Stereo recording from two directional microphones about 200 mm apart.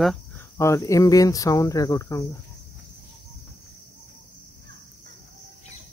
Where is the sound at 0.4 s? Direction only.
15° left (ahead or behind).